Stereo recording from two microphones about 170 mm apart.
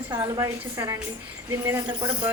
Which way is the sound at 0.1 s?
20° right (ahead or behind).